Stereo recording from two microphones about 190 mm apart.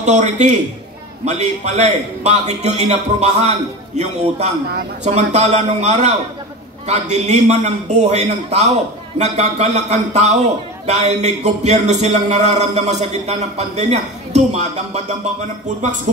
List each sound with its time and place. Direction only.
0.0 s speech: 40° right (ahead or behind)